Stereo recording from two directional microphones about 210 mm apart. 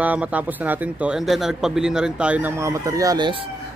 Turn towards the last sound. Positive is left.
turn(degrees=-20)  # may be behind; listen again after turning